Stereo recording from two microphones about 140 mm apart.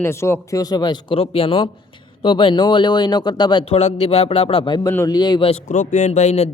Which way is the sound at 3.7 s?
50° left (ahead or behind).